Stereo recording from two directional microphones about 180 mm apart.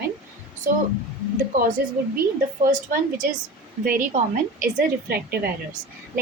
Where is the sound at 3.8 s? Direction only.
50° right (ahead or behind).